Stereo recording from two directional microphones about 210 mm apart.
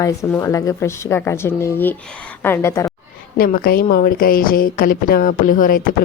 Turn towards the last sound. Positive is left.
turn(degrees=40)  # may be behind; listen again after turning